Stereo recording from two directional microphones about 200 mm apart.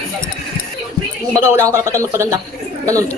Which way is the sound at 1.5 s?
15° right (ahead or behind).